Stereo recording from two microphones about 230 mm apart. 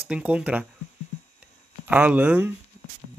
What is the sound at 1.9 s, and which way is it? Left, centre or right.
Speech, centre.